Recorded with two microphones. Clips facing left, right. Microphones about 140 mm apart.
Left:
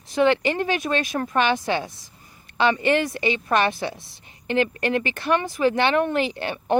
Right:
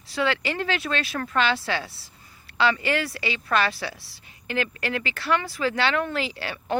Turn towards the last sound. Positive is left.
turn(degrees=20)  # may be behind; listen again after turning